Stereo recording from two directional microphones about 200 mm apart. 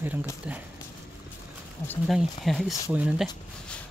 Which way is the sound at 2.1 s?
Centre (ahead or behind).